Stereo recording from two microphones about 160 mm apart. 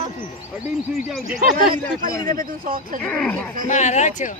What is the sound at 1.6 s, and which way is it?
Speech, 60° right (ahead or behind).